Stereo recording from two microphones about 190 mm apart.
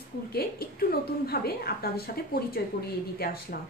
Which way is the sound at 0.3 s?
55° left (ahead or behind).